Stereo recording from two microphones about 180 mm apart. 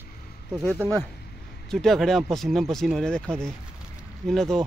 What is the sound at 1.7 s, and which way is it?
Speech, centre (ahead or behind).